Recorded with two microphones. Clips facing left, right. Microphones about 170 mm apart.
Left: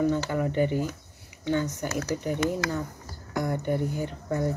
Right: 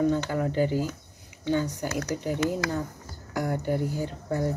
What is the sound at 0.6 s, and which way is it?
Speech, 20° left (ahead or behind).